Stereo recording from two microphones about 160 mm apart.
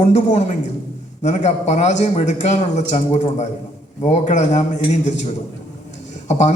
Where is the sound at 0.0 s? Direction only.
45° left (ahead or behind).